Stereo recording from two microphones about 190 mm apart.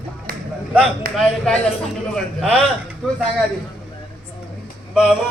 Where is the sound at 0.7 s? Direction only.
Centre (ahead or behind).